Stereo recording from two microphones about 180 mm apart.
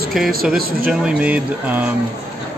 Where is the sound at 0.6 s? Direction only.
55° right (ahead or behind).